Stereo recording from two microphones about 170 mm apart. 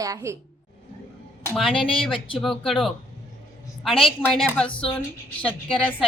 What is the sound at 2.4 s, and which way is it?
A woman's voice, centre (ahead or behind).